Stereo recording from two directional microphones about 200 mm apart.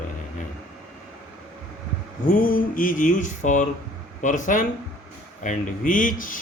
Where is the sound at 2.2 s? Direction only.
45° left (ahead or behind).